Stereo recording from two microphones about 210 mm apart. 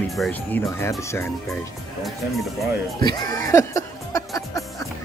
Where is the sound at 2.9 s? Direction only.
20° left (ahead or behind).